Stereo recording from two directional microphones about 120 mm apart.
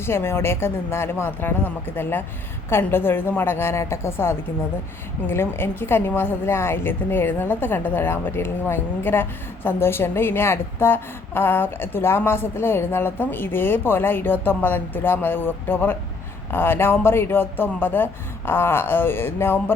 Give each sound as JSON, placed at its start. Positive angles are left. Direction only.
{"t": 0.0, "sound": "a woman's voice", "side_deg": 20}